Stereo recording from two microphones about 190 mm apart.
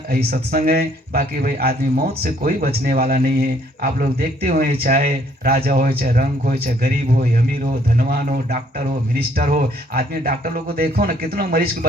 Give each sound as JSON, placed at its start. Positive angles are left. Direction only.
{"t": 0.1, "sound": "a man's voice", "side_deg": -50}